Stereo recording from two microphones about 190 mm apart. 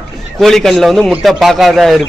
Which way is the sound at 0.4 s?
Centre (ahead or behind).